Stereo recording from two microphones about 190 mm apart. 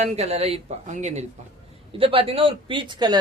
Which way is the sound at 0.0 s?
35° right (ahead or behind).